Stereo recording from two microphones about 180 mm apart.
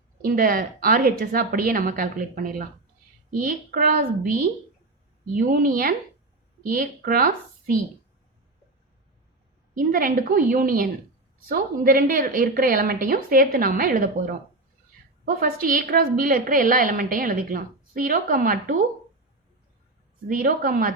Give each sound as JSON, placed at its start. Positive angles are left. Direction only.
{"t": 0.2, "sound": "a woman's voice", "side_deg": -55}
{"t": 5.3, "sound": "a woman's voice", "side_deg": -50}
{"t": 9.7, "sound": "a woman's voice", "side_deg": -50}
{"t": 20.2, "sound": "a woman's voice", "side_deg": -55}